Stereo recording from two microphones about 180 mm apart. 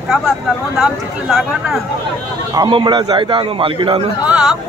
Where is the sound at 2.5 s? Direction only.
25° right (ahead or behind).